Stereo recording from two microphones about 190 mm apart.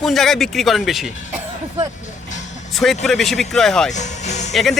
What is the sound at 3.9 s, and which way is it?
Music, 40° left (ahead or behind).